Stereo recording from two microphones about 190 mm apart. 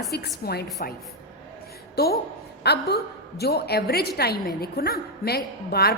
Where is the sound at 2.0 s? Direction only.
55° left (ahead or behind).